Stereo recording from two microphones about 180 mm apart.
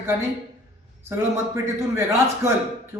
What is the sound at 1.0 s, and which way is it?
A man's voice, 15° right (ahead or behind).